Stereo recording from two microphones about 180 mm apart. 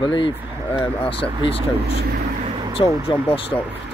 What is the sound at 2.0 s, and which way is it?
Speech, 60° right (ahead or behind).